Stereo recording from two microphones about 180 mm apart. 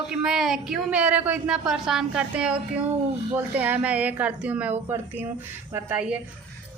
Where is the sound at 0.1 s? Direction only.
5° right (ahead or behind).